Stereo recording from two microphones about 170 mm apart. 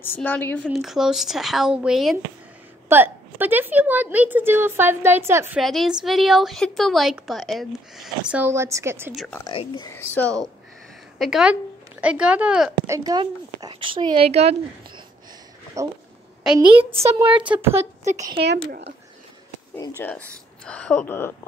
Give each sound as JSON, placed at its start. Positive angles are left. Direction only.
{"t": 0.0, "sound": "speech", "side_deg": 10}
{"t": 0.7, "sound": "a woman's voice", "side_deg": 0}
{"t": 5.6, "sound": "a woman's voice", "side_deg": 0}
{"t": 9.1, "sound": "a woman's voice", "side_deg": 0}
{"t": 9.5, "sound": "speech", "side_deg": 30}
{"t": 9.9, "sound": "speech", "side_deg": 10}
{"t": 11.1, "sound": "a woman's voice", "side_deg": 0}
{"t": 12.8, "sound": "speech", "side_deg": -20}
{"t": 15.8, "sound": "speech", "side_deg": -20}
{"t": 17.0, "sound": "a woman's voice", "side_deg": -15}
{"t": 18.1, "sound": "speech", "side_deg": -40}
{"t": 18.4, "sound": "speech", "side_deg": -75}
{"t": 20.0, "sound": "speech", "side_deg": 10}